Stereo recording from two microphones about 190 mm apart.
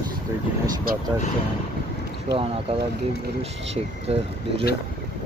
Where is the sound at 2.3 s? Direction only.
60° right (ahead or behind).